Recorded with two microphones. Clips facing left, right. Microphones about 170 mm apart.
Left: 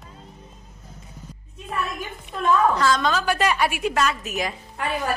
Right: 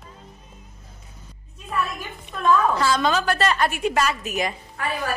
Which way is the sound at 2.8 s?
5° right (ahead or behind).